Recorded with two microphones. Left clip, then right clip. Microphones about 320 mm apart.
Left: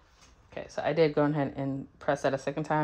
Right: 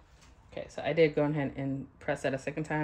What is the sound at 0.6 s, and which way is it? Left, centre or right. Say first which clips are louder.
Speech: left 1 dB; centre.